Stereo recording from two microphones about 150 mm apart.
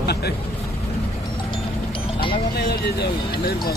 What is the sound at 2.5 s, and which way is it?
Speech, 90° left.